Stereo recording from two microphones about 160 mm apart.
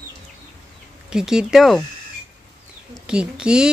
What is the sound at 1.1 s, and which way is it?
Speech, 5° right (ahead or behind).